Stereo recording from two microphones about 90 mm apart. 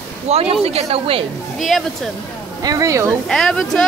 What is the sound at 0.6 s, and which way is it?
Speech, 90° right.